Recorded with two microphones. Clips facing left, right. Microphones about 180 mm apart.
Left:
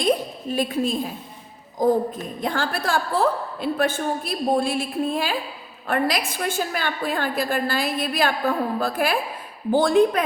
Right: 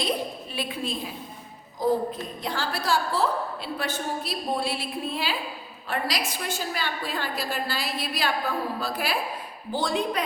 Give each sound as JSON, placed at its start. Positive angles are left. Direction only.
{"t": 0.5, "sound": "a woman's voice", "side_deg": 45}